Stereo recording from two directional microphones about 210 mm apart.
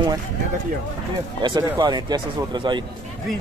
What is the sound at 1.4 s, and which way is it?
Speech, 20° right (ahead or behind).